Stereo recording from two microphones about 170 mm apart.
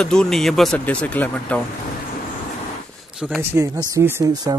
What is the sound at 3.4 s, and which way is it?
Speech, 15° right (ahead or behind).